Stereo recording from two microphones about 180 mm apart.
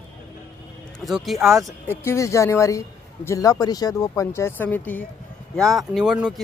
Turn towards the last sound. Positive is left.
turn(degrees=-5)  # may be behind; listen again after turning